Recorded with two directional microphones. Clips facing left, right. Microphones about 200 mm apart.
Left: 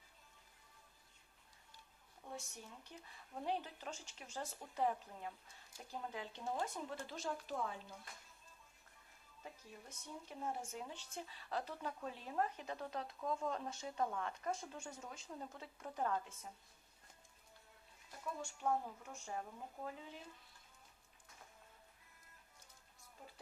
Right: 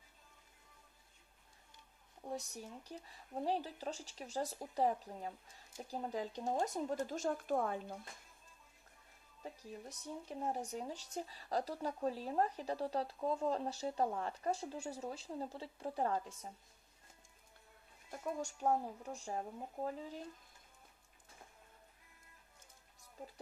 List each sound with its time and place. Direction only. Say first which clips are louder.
2.2 s speech: right 7 dB; 35° right (ahead or behind); by 7.9 s 55° right (ahead or behind)
9.9 s speech: right 4 dB; 35° right (ahead or behind)
18.1 s speech: right 6 dB; 45° right (ahead or behind)